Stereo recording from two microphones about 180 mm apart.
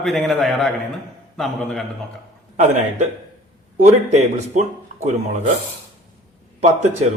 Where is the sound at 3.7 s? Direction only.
40° right (ahead or behind).